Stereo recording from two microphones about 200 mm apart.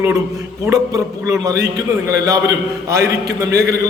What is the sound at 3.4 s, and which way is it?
Speech, 15° right (ahead or behind).